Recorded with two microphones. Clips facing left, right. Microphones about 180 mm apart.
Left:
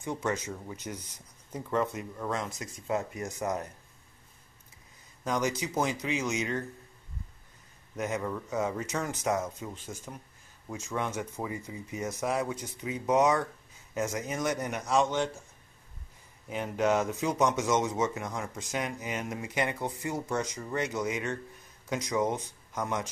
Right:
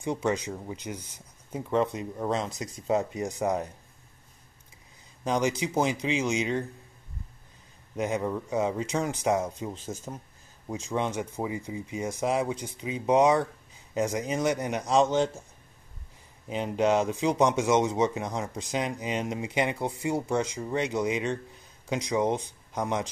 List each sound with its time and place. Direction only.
0.0 s speech: 15° right (ahead or behind)
5.2 s speech: 25° right (ahead or behind)
5.9 s speech: 25° right (ahead or behind)
8.1 s speech: 20° right (ahead or behind)
16.4 s speech: 20° right (ahead or behind)
20.2 s speech: 15° right (ahead or behind)
22.7 s speech: 20° right (ahead or behind)